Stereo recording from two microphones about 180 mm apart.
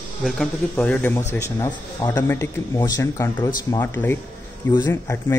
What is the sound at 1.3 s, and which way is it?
A man's voice, 20° left (ahead or behind).